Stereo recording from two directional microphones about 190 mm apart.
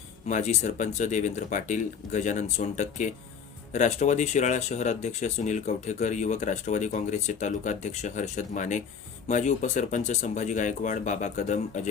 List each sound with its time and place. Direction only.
0.3 s speech: 40° left (ahead or behind)